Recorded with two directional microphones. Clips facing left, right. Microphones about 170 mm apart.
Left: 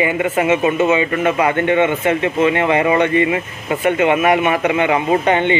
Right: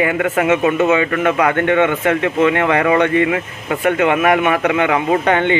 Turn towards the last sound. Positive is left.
turn(degrees=15)  # may be behind; listen again after turning